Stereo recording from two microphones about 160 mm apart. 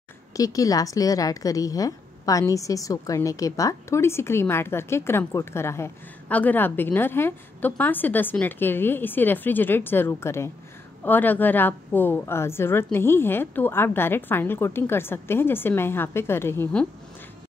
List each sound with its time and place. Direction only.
0.3 s a woman's voice: 20° left (ahead or behind)